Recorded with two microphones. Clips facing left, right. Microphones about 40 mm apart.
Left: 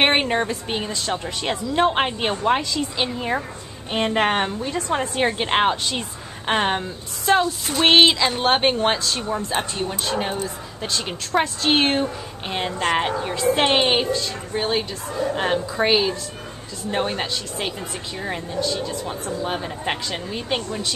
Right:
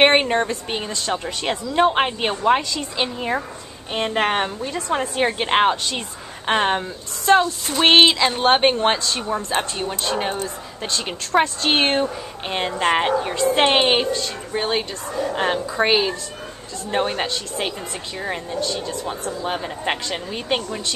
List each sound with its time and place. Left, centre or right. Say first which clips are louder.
0.0 s speech: right 3 dB; centre